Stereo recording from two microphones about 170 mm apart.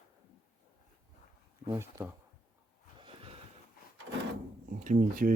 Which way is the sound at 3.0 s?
35° right (ahead or behind).